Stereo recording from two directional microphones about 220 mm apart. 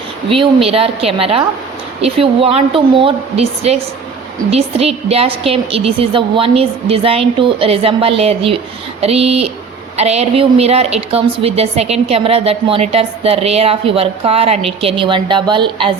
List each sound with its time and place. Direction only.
0.3 s a woman's voice: 25° right (ahead or behind)